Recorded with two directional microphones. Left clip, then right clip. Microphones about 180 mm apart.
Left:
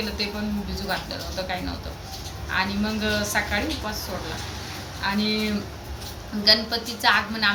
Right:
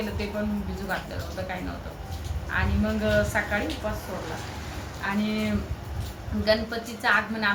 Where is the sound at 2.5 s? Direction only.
Centre (ahead or behind).